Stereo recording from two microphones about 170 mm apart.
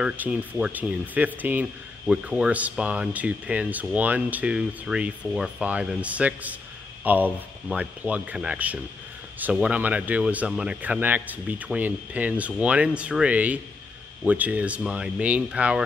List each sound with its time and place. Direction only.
0.0 s speech: 10° right (ahead or behind)